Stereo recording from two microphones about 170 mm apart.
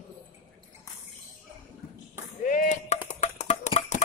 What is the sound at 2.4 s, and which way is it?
Chop, 50° left (ahead or behind).